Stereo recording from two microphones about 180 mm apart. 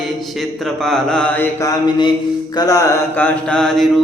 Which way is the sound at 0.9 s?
5° left (ahead or behind).